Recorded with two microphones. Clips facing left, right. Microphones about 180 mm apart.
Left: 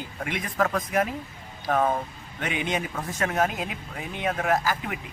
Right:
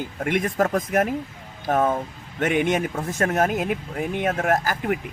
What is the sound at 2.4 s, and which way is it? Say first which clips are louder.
Speech: right 7 dB; 50° right (ahead or behind).